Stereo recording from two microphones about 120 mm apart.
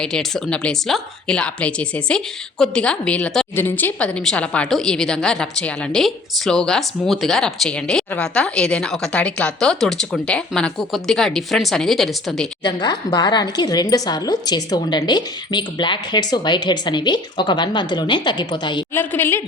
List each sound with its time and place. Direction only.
0.0 s a woman's voice: 5° left (ahead or behind)
12.6 s a woman's voice: 35° left (ahead or behind)
18.9 s a woman's voice: 20° left (ahead or behind)